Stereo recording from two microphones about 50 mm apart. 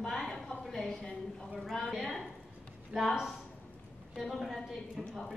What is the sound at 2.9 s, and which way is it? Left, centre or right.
Speech, centre.